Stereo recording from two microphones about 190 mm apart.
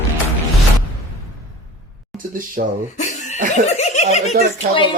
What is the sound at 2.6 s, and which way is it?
Speech, 50° right (ahead or behind).